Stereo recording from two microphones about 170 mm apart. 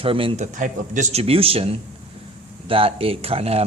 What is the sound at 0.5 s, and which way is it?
Speech, 50° right (ahead or behind).